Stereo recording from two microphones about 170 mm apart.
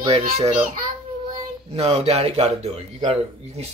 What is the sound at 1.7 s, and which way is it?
Speech, 35° right (ahead or behind).